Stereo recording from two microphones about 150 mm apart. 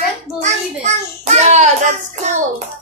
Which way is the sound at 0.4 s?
50° right (ahead or behind).